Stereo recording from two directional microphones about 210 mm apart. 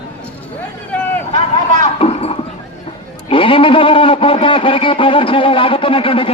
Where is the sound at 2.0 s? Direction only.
30° left (ahead or behind).